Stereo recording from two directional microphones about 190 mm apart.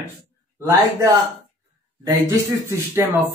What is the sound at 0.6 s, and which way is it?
Speech, 15° right (ahead or behind).